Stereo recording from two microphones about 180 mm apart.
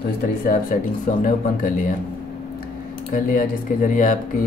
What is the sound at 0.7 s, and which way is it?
Speech, 50° left (ahead or behind).